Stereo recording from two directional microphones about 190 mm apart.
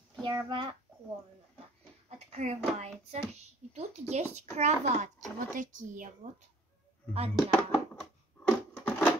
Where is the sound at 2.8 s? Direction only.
35° right (ahead or behind).